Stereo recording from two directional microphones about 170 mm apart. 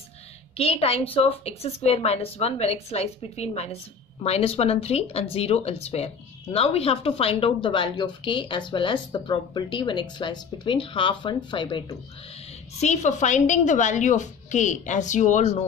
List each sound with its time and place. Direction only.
0.6 s speech: 35° left (ahead or behind)
12.8 s a woman's voice: 45° left (ahead or behind)